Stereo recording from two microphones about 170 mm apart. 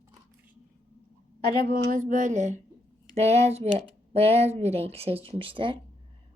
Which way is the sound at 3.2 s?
40° right (ahead or behind).